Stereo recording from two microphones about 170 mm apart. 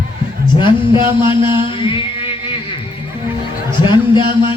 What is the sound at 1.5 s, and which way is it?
Music, 30° left (ahead or behind).